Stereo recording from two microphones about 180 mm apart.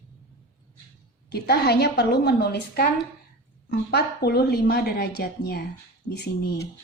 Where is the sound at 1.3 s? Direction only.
65° left (ahead or behind).